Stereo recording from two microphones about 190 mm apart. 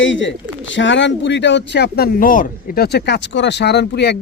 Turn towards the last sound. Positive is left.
turn(degrees=60)  # may be behind; listen again after turning